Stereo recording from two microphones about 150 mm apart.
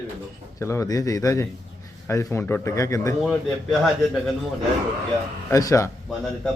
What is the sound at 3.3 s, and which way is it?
Speech, centre (ahead or behind).